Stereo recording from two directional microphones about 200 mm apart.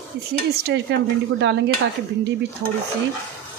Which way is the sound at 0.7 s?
65° right (ahead or behind).